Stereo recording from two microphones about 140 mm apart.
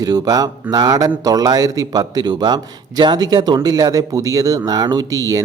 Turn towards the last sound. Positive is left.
turn(degrees=-25)  # may be behind; listen again after turning